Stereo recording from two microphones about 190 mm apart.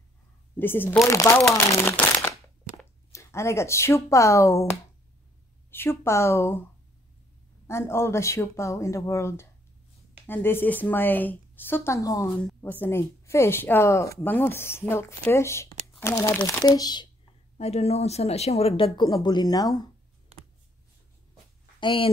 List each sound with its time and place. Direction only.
0.6 s speech: 10° left (ahead or behind)
7.6 s speech: 15° left (ahead or behind)
17.6 s a woman's voice: 35° left (ahead or behind)
18.9 s speech: 20° left (ahead or behind)
21.7 s speech: 25° left (ahead or behind)